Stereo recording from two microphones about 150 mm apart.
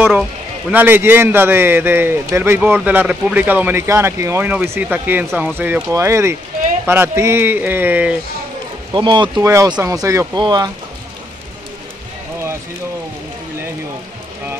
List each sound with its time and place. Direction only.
0.0 s a man's voice: 10° right (ahead or behind)
8.9 s speech: 30° right (ahead or behind)
9.4 s speech: 20° right (ahead or behind)